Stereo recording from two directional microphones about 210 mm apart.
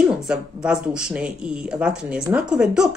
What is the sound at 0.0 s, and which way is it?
Speech, 5° right (ahead or behind).